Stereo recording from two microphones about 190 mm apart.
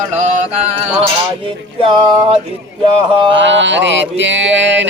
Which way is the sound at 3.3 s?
70° right (ahead or behind).